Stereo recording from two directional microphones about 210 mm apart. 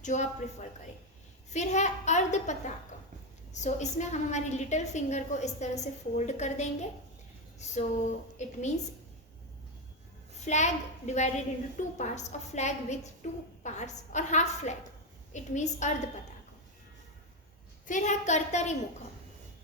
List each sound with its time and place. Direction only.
0.0 s speech: 35° left (ahead or behind)
1.5 s a woman's voice: 35° left (ahead or behind)
10.4 s a woman's voice: 35° left (ahead or behind)
17.8 s a woman's voice: 35° left (ahead or behind)